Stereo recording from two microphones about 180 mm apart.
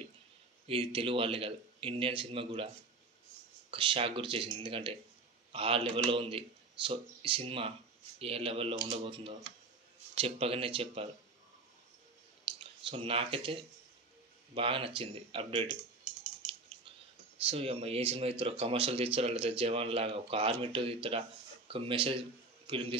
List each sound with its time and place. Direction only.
0.7 s speech: 30° right (ahead or behind)
3.7 s speech: 30° right (ahead or behind)
12.5 s a sound: 30° right (ahead or behind)
12.8 s speech: 30° right (ahead or behind)
17.5 s speech: 35° right (ahead or behind)